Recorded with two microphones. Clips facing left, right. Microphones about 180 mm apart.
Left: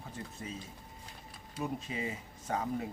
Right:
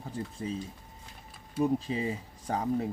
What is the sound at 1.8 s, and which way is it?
Speech, 30° right (ahead or behind).